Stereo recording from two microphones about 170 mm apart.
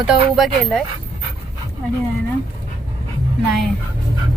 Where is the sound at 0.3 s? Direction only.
Centre (ahead or behind).